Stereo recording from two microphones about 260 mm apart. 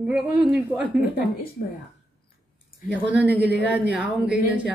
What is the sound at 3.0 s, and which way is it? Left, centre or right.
Speech, centre.